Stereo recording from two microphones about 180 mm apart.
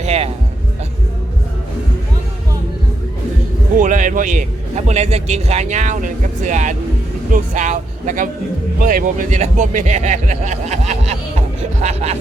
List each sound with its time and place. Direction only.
0.0 s music: 35° right (ahead or behind)
3.8 s a man's voice: 45° right (ahead or behind)
11.3 s music: 35° right (ahead or behind)